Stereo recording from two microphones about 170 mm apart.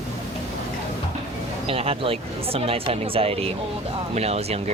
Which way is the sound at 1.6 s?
35° right (ahead or behind).